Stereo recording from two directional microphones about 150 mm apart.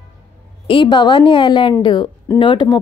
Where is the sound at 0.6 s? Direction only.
35° left (ahead or behind).